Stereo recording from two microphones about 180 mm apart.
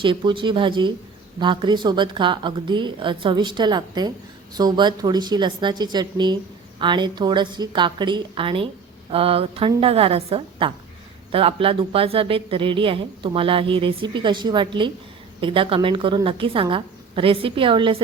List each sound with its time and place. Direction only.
0.0 s a woman's voice: 30° right (ahead or behind)